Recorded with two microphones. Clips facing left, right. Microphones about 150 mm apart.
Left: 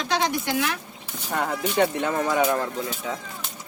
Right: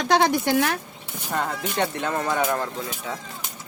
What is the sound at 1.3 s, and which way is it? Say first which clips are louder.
Speech: left 2 dB; 5° left (ahead or behind).